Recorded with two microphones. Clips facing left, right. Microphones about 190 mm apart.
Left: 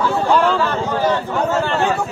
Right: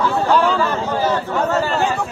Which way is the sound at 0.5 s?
10° right (ahead or behind).